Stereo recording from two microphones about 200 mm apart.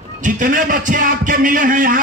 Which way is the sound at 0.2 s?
40° right (ahead or behind).